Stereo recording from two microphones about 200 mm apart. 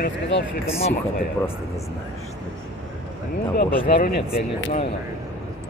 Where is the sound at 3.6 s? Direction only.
50° left (ahead or behind).